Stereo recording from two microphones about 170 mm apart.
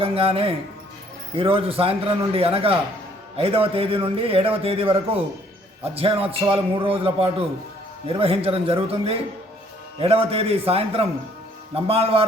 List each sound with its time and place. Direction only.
0.0 s a man's voice: 35° right (ahead or behind)